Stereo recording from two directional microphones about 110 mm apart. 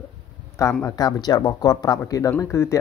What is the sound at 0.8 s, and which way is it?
Speech, 35° left (ahead or behind).